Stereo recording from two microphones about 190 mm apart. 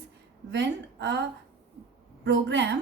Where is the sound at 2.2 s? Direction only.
65° right (ahead or behind).